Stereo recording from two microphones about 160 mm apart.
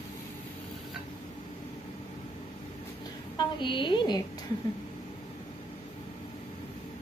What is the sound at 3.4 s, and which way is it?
Speech, 30° left (ahead or behind).